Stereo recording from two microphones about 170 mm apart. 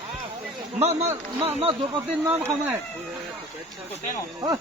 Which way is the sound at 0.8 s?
40° right (ahead or behind).